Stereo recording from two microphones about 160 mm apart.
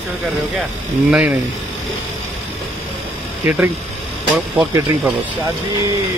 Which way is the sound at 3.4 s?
10° right (ahead or behind).